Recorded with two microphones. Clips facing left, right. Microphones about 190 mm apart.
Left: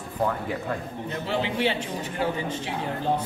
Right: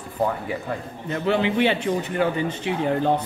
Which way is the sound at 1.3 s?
65° right (ahead or behind).